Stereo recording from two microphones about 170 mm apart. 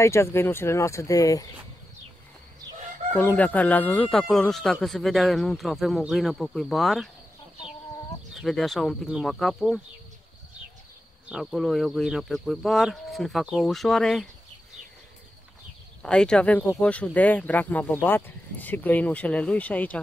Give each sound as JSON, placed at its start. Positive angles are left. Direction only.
{"t": 0.0, "sound": "speech", "side_deg": 15}
{"t": 3.2, "sound": "speech", "side_deg": 10}
{"t": 8.4, "sound": "speech", "side_deg": 0}
{"t": 11.2, "sound": "speech", "side_deg": -5}
{"t": 16.0, "sound": "speech", "side_deg": 5}